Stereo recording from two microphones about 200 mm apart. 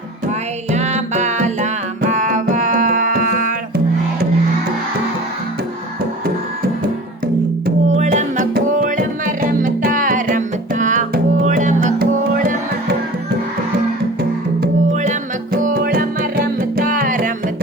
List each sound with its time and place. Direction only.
0.7 s music: 35° right (ahead or behind)
7.9 s music: 35° right (ahead or behind)
15.5 s music: 45° right (ahead or behind)